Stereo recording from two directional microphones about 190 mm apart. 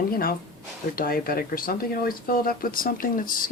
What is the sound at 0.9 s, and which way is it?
Speech, 50° left (ahead or behind).